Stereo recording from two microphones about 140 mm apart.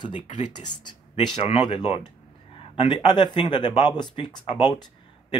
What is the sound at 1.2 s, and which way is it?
Speech, 35° left (ahead or behind).